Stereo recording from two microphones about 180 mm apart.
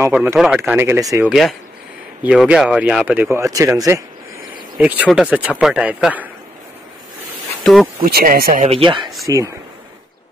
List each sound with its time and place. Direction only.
0.0 s speech: 10° right (ahead or behind)
2.2 s speech: 5° right (ahead or behind)
7.6 s speech: centre (ahead or behind)
8.0 s speech: 55° right (ahead or behind)
8.6 s speech: 30° right (ahead or behind)
9.2 s speech: 15° right (ahead or behind)